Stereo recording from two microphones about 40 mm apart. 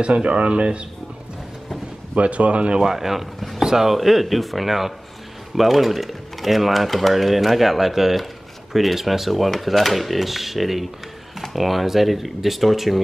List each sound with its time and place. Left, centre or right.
0.0 s speech: right
2.1 s speech: right
2.8 s speech: centre